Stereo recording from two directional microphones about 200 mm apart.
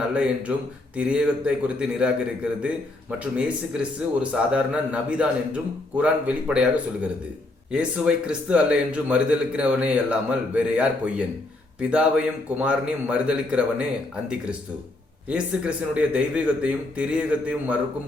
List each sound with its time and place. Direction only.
0.1 s a man's voice: 5° right (ahead or behind)
7.7 s a man's voice: 5° right (ahead or behind)
15.3 s a man's voice: 5° right (ahead or behind)